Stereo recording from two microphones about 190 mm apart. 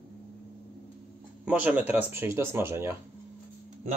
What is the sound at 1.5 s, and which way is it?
Speech, 5° right (ahead or behind).